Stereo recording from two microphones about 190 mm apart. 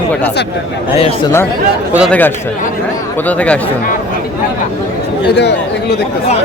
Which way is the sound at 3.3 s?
10° left (ahead or behind).